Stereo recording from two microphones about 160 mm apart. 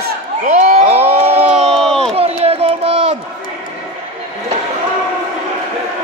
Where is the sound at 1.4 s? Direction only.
Centre (ahead or behind).